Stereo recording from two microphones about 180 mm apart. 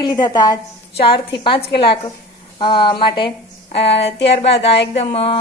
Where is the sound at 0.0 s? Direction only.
20° left (ahead or behind).